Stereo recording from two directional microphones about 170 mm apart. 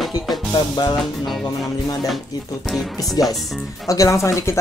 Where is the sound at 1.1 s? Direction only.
Centre (ahead or behind).